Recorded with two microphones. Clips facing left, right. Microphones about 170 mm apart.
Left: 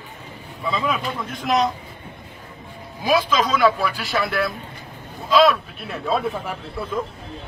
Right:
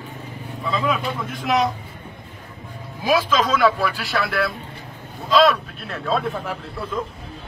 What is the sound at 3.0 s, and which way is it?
A man's voice, centre (ahead or behind).